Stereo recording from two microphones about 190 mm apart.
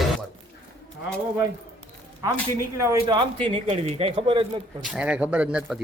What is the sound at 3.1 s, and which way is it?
A man's voice, 30° right (ahead or behind).